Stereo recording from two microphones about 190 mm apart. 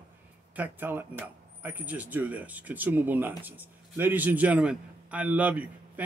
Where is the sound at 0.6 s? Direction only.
10° right (ahead or behind).